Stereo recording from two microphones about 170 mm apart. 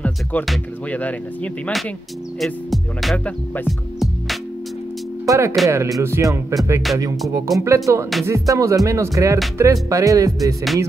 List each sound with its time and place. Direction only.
0.0 s speech: 10° left (ahead or behind)
2.4 s music: centre (ahead or behind)
5.2 s speech: 15° right (ahead or behind)
5.7 s music: 20° right (ahead or behind)
7.2 s speech: 20° right (ahead or behind)
7.6 s music: 15° right (ahead or behind)
9.6 s speech: 20° right (ahead or behind)